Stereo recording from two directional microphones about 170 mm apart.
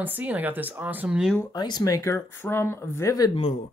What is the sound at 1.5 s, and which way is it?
Speech, 25° left (ahead or behind).